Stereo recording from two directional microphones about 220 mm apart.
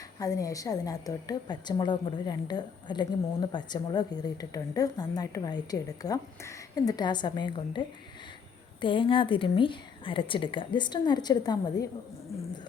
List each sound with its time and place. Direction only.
0.2 s a woman's voice: 15° left (ahead or behind)